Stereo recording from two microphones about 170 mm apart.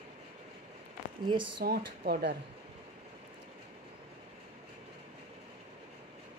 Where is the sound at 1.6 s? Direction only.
70° right (ahead or behind).